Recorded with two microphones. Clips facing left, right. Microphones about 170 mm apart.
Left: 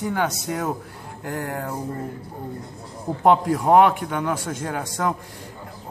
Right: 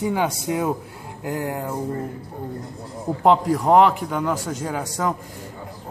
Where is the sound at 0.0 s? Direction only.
5° right (ahead or behind).